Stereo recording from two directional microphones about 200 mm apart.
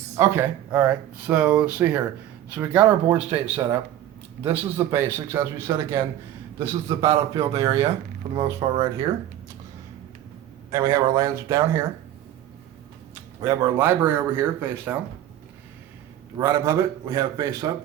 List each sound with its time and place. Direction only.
0.2 s speech: 10° right (ahead or behind)
10.7 s speech: 15° right (ahead or behind)
13.4 s speech: 10° right (ahead or behind)
16.4 s speech: 15° right (ahead or behind)